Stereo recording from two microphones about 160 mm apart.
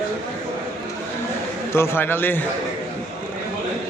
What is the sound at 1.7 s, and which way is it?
Speech, 15° left (ahead or behind).